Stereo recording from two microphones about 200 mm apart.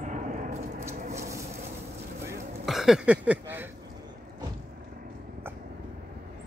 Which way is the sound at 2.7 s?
Centre (ahead or behind).